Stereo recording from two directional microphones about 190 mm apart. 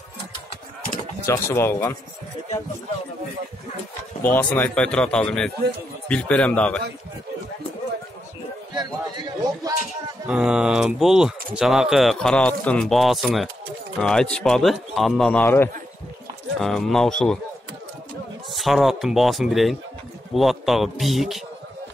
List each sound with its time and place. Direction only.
1.2 s a man's voice: 15° left (ahead or behind)
4.2 s a man's voice: 10° left (ahead or behind)
8.7 s speech: 20° right (ahead or behind)
10.2 s speech: 5° right (ahead or behind)
18.5 s speech: centre (ahead or behind)